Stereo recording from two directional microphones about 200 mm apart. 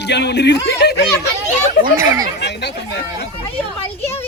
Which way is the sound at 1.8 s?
20° right (ahead or behind).